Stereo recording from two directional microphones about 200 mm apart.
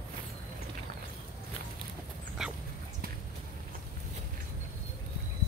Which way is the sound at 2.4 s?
Centre (ahead or behind).